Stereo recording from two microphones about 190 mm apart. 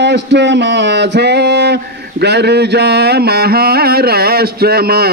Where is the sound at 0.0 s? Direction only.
65° right (ahead or behind).